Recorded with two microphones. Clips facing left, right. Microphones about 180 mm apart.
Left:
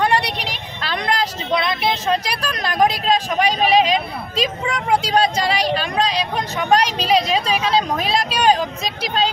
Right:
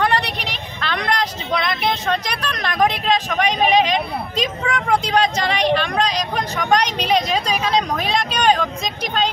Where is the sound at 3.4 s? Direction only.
35° left (ahead or behind).